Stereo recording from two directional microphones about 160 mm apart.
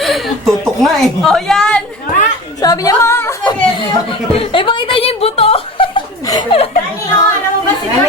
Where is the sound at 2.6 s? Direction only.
20° left (ahead or behind).